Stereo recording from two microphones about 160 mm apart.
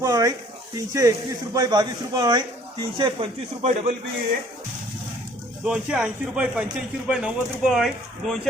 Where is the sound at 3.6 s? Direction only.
45° right (ahead or behind).